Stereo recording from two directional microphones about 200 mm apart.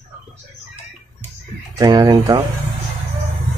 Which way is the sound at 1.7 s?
15° right (ahead or behind).